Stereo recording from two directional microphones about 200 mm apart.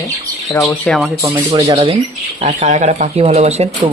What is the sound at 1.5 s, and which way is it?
Speech, 25° right (ahead or behind).